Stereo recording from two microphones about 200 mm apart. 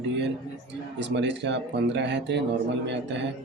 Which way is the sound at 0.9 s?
60° right (ahead or behind).